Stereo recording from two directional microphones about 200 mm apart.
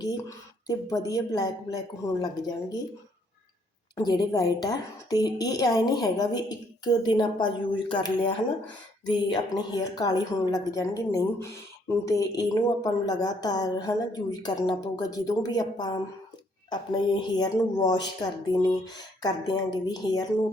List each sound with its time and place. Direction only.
0.0 s a woman's voice: 15° left (ahead or behind)
3.9 s a woman's voice: 20° left (ahead or behind)